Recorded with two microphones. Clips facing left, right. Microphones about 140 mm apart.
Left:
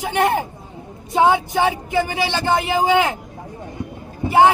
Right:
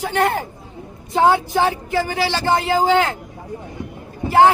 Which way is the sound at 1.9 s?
15° left (ahead or behind).